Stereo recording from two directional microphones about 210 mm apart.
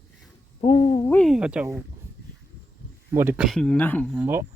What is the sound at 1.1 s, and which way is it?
Speech, centre (ahead or behind).